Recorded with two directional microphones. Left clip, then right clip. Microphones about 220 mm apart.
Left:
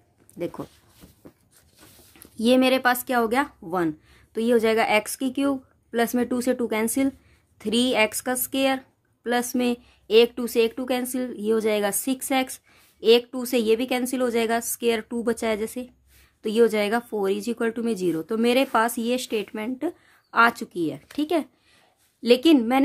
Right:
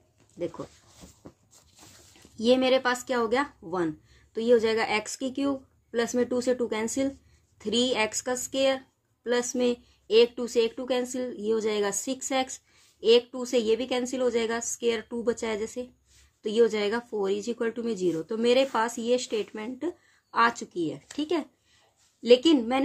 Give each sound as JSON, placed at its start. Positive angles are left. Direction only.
{"t": 2.4, "sound": "a woman's voice", "side_deg": 40}